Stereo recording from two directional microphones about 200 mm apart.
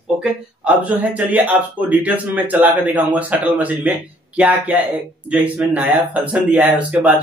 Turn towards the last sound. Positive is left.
turn(degrees=-10)  # may be behind; listen again after turning